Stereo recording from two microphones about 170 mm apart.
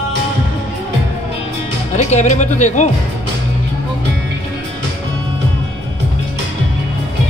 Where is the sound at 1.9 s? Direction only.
45° left (ahead or behind).